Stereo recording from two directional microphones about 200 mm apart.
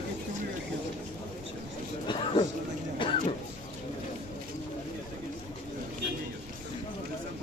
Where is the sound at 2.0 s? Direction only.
25° left (ahead or behind).